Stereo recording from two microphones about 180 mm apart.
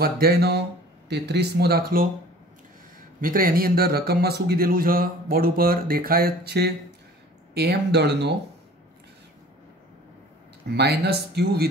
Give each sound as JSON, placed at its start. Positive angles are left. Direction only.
{"t": 0.0, "sound": "speech", "side_deg": -60}
{"t": 3.2, "sound": "speech", "side_deg": -50}
{"t": 10.7, "sound": "speech", "side_deg": -65}